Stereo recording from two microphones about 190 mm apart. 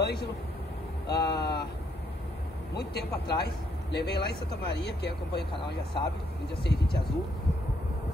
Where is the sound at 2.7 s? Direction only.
60° left (ahead or behind).